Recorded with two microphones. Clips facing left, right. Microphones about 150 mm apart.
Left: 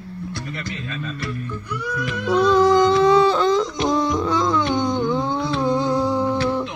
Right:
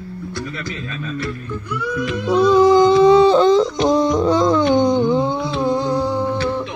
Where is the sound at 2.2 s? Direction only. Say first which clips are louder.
Right 3 dB; 5° right (ahead or behind); by 3.9 s 25° right (ahead or behind).